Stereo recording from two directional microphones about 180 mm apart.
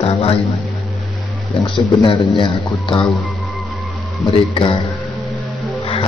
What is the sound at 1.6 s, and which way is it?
Speech, 30° left (ahead or behind).